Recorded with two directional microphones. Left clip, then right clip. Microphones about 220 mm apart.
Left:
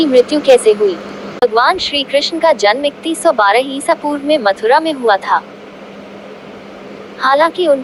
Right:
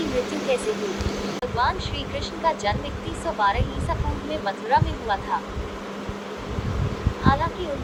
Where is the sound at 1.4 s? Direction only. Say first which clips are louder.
Left 14 dB; 40° left (ahead or behind).